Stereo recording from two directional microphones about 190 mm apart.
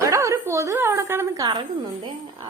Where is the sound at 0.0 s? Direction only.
15° right (ahead or behind).